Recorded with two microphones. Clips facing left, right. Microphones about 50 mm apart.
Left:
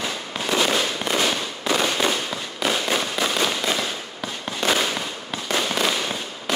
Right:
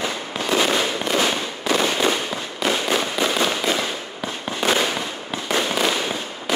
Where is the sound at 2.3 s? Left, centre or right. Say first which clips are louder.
Right 2 dB; centre.